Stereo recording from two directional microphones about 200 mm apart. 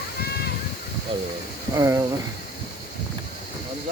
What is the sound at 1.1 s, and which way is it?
Speech, 25° right (ahead or behind).